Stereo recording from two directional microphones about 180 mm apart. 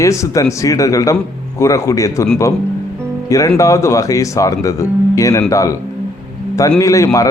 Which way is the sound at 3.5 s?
15° left (ahead or behind).